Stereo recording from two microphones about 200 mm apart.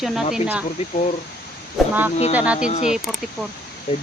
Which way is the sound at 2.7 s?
35° left (ahead or behind).